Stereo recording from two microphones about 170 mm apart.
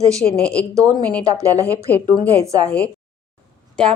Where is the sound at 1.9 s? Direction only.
10° left (ahead or behind).